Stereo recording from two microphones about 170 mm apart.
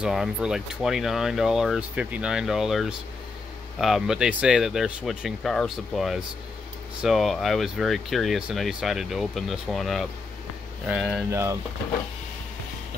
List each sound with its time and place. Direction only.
0.0 s speech: 5° right (ahead or behind)
11.2 s speech: 15° right (ahead or behind)